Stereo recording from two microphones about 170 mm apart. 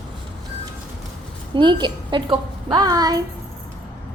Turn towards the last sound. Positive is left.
turn(degrees=-20)  # may be behind; listen again after turning